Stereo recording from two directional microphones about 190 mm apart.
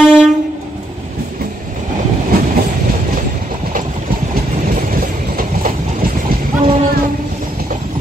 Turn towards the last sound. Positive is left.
turn(degrees=-30)  # may be behind; listen again after turning